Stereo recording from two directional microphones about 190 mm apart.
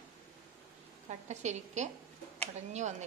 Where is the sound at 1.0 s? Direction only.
35° right (ahead or behind).